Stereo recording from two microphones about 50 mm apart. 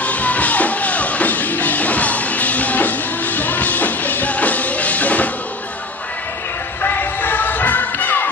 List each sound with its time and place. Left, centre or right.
0.0 s music: left
6.8 s music: left